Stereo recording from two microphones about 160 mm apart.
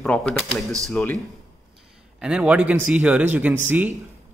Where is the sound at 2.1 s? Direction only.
5° right (ahead or behind).